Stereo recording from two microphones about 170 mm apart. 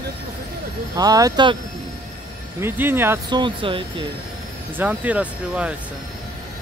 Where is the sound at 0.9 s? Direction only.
20° right (ahead or behind).